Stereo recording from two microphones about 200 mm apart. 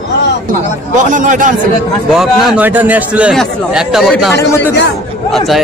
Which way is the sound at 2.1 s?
Centre (ahead or behind).